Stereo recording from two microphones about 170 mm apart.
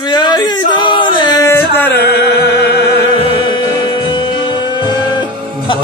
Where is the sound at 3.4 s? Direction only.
30° left (ahead or behind).